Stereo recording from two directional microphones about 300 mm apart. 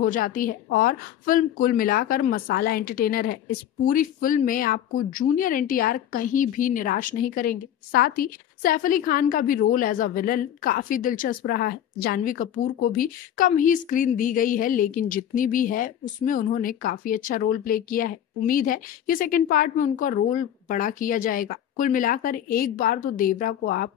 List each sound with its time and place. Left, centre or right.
0.0 s speech: left